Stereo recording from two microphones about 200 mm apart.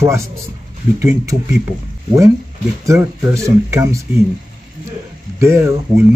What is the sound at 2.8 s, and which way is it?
Speech, 15° right (ahead or behind).